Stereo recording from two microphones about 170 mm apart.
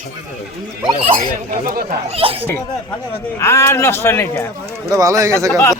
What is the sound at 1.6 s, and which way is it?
Speech, 60° right (ahead or behind).